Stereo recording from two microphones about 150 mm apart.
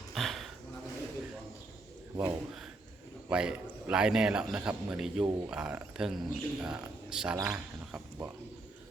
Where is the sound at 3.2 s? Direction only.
5° right (ahead or behind).